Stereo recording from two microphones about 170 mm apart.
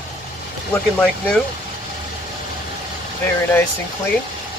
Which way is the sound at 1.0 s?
5° left (ahead or behind).